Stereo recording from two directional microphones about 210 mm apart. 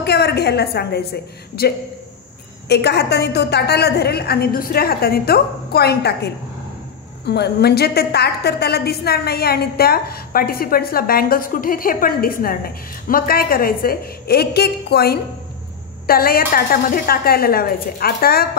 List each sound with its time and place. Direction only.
0.0 s a woman's voice: 50° left (ahead or behind)
2.7 s a woman's voice: 50° left (ahead or behind)